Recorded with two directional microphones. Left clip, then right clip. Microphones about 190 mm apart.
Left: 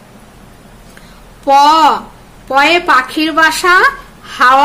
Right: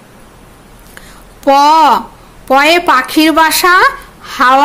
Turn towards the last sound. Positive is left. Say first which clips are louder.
# even
turn(degrees=-30)  # may be behind; listen again after turning